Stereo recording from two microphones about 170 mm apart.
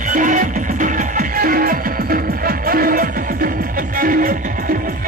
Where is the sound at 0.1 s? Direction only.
50° right (ahead or behind).